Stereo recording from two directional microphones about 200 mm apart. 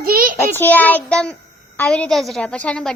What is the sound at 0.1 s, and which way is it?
Child singing, 45° right (ahead or behind).